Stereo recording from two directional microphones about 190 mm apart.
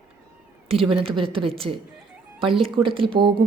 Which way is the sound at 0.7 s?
30° right (ahead or behind).